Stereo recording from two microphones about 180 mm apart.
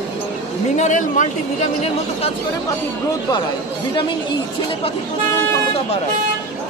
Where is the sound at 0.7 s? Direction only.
45° left (ahead or behind).